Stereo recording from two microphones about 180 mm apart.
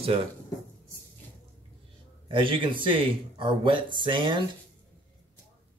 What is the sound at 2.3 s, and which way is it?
Speech, 30° right (ahead or behind).